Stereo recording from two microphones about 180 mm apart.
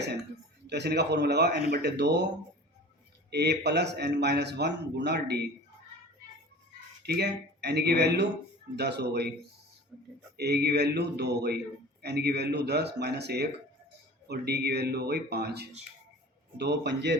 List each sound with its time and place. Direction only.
0.7 s a man's voice: 65° right (ahead or behind)
7.0 s a man's voice: 65° right (ahead or behind)
9.9 s a sound: centre (ahead or behind)
10.3 s a man's voice: 65° right (ahead or behind)